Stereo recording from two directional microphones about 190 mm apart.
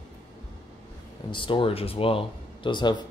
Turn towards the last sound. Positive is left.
turn(degrees=25)  # may be behind; listen again after turning